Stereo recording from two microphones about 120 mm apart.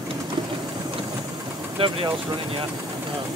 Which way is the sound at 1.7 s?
45° right (ahead or behind).